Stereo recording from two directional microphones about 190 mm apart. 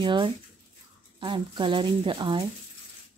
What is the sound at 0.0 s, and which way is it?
Speech, 25° right (ahead or behind).